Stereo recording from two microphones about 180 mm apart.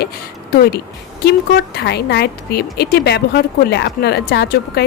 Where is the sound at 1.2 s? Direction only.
65° left (ahead or behind).